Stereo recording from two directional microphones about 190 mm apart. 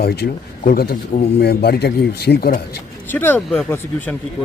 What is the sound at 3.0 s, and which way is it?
Speech, 10° left (ahead or behind).